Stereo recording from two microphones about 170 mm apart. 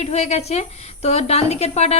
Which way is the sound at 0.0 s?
40° left (ahead or behind).